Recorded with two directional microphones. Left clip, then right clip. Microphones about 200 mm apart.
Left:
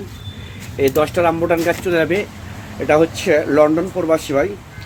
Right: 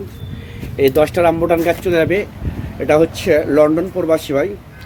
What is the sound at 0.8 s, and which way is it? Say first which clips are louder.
A man's voice: right 3 dB; 10° right (ahead or behind).